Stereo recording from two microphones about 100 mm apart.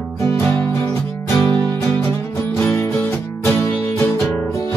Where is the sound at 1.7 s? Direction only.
20° left (ahead or behind).